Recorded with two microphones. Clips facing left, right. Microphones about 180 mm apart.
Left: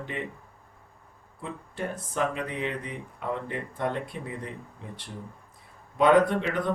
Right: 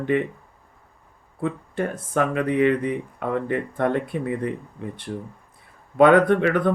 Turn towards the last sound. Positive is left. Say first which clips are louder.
# right 7 dB
turn(degrees=-60)  # may be behind; listen again after turning